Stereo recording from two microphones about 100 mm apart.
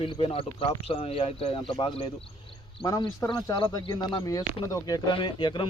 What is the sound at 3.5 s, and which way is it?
Speech, 45° left (ahead or behind).